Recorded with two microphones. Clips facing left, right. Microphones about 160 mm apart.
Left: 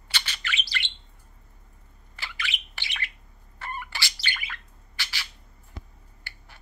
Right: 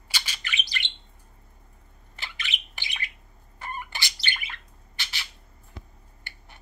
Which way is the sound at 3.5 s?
15° right (ahead or behind).